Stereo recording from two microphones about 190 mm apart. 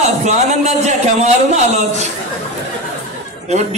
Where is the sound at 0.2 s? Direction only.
35° right (ahead or behind).